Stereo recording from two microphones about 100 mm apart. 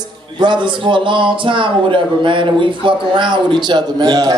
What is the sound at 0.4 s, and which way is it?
A man's voice, 50° right (ahead or behind).